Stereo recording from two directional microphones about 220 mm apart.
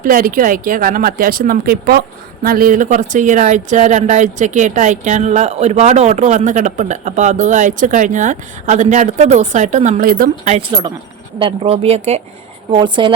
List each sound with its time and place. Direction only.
0.0 s speech: 40° right (ahead or behind)
11.3 s speech: 25° right (ahead or behind)